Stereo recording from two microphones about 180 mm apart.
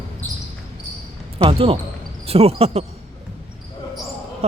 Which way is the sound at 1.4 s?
30° right (ahead or behind).